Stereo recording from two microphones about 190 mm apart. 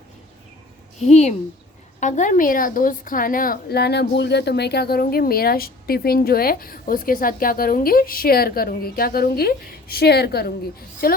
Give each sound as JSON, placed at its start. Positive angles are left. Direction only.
{"t": 1.0, "sound": "a woman's voice", "side_deg": 35}